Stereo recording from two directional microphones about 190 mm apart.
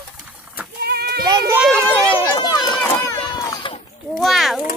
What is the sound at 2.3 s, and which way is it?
Run, 20° left (ahead or behind).